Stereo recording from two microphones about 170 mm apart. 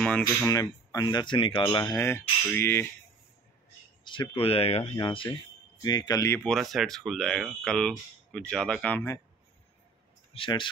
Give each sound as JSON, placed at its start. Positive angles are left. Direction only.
{"t": 0.0, "sound": "speech", "side_deg": 5}
{"t": 0.5, "sound": "speech", "side_deg": 20}
{"t": 2.0, "sound": "a sound", "side_deg": 15}
{"t": 4.0, "sound": "speech", "side_deg": 30}
{"t": 6.4, "sound": "speech", "side_deg": 0}
{"t": 10.3, "sound": "speech", "side_deg": 30}